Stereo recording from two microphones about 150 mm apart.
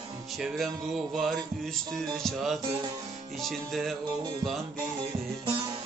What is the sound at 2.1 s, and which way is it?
Music, centre (ahead or behind).